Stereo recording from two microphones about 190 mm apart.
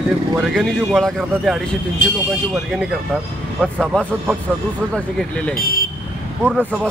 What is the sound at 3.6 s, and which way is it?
Speech, 5° right (ahead or behind).